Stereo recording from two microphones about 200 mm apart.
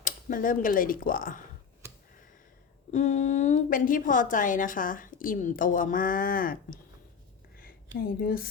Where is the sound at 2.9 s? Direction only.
35° left (ahead or behind).